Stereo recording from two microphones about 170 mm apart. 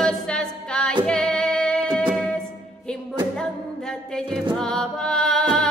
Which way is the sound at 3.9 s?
5° left (ahead or behind).